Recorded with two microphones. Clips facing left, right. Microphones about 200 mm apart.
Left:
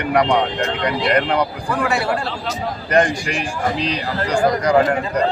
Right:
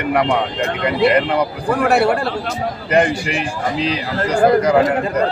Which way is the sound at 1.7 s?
60° right (ahead or behind).